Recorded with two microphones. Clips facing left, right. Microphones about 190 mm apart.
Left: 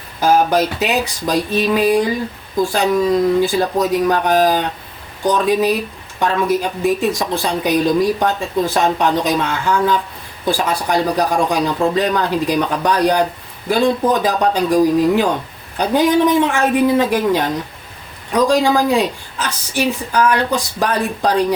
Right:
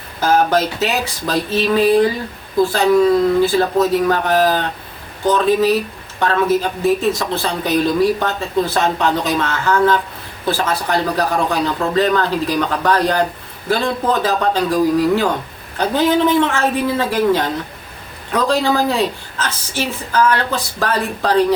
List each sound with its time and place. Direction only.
0.2 s speech: 10° left (ahead or behind)